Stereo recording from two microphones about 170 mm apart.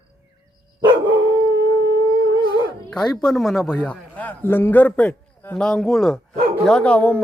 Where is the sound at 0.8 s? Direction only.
25° right (ahead or behind).